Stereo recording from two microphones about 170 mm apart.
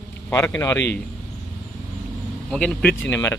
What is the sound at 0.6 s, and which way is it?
Speech, 15° left (ahead or behind).